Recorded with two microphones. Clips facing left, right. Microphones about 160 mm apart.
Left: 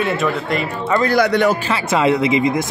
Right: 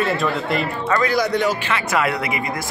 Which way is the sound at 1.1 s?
65° left (ahead or behind).